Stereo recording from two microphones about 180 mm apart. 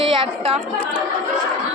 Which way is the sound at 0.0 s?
30° right (ahead or behind).